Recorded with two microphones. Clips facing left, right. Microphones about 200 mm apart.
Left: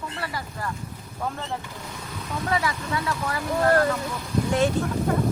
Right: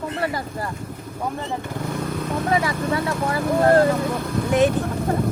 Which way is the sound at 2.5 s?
25° right (ahead or behind).